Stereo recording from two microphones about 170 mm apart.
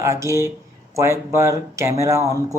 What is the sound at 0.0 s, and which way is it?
Speech, 15° right (ahead or behind).